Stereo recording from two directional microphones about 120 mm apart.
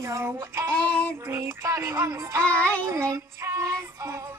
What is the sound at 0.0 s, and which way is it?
Female singing, 25° right (ahead or behind).